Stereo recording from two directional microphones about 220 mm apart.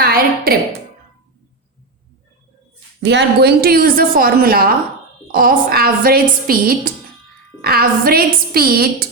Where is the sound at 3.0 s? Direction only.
50° right (ahead or behind).